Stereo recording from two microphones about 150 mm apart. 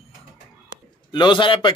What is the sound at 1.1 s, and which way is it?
Speech, 30° left (ahead or behind).